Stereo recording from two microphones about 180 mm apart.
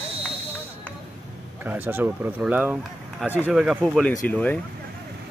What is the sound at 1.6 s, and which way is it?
Speech, 10° right (ahead or behind).